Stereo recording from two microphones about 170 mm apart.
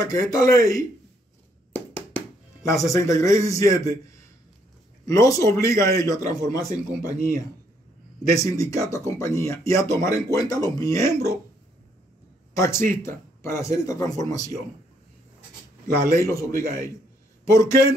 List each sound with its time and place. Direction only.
0.0 s a man's voice: 20° left (ahead or behind)
1.7 s a sound: 10° left (ahead or behind)
2.7 s a man's voice: 20° left (ahead or behind)
8.4 s a man's voice: 20° left (ahead or behind)
12.5 s a man's voice: 20° left (ahead or behind)
16.1 s a man's voice: 15° left (ahead or behind)